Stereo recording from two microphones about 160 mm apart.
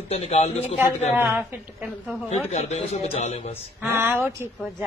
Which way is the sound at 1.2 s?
10° right (ahead or behind).